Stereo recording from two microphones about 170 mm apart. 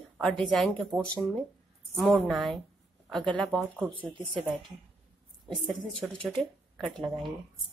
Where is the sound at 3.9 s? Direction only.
30° right (ahead or behind).